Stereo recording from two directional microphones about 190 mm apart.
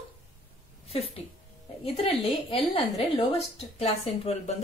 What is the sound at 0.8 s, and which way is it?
A woman's voice, 30° left (ahead or behind).